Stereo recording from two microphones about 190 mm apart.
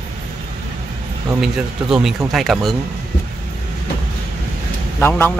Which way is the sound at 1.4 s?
Centre (ahead or behind).